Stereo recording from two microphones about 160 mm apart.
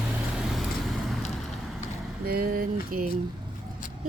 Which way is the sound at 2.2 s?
70° right (ahead or behind).